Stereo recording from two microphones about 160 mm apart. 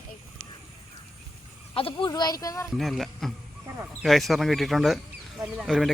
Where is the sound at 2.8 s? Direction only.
Centre (ahead or behind).